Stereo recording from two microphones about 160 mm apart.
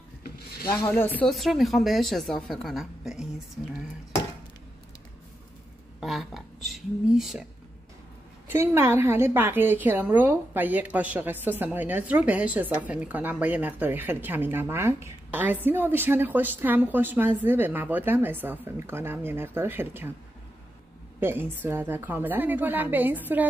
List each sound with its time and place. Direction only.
0.7 s speech: 25° left (ahead or behind)
0.9 s speech: 10° left (ahead or behind)
1.3 s a woman's voice: centre (ahead or behind)
5.9 s speech: centre (ahead or behind)
8.5 s a woman's voice: 15° right (ahead or behind)
21.2 s a woman's voice: 15° right (ahead or behind)